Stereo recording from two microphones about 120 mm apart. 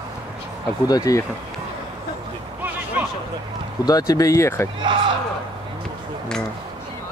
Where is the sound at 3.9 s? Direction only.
30° left (ahead or behind).